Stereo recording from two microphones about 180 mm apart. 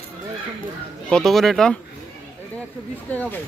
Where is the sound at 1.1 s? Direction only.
Centre (ahead or behind).